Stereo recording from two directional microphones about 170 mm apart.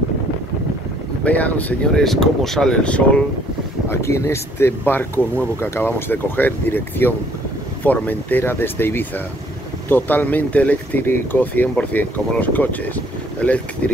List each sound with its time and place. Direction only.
1.2 s speech: 10° left (ahead or behind)